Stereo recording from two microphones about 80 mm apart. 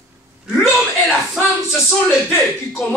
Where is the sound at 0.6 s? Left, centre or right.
Centre.